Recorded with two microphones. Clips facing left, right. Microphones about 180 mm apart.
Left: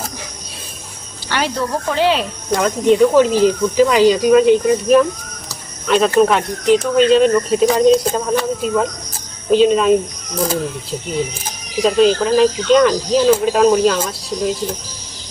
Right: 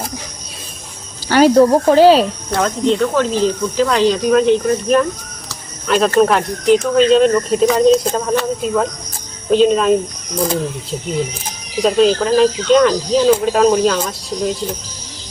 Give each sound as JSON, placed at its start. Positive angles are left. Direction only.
{"t": 1.3, "sound": "speech", "side_deg": -40}
{"t": 2.5, "sound": "speech", "side_deg": 10}
{"t": 6.1, "sound": "speech", "side_deg": 0}
{"t": 11.8, "sound": "speech", "side_deg": 0}